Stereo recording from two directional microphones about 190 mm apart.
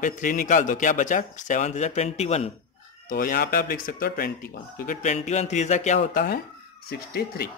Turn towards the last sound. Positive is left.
turn(degrees=55)  # may be behind; listen again after turning